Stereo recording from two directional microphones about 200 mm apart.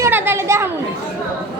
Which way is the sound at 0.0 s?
10° right (ahead or behind).